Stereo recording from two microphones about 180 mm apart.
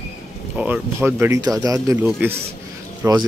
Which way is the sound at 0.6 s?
10° right (ahead or behind).